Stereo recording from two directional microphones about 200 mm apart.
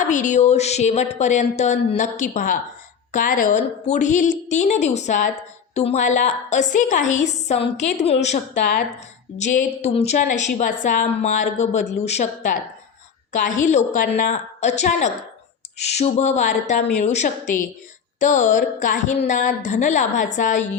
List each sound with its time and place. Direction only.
0.0 s a woman's voice: 40° left (ahead or behind)